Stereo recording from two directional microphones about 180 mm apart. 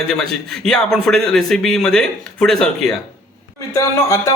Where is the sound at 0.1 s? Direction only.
Centre (ahead or behind).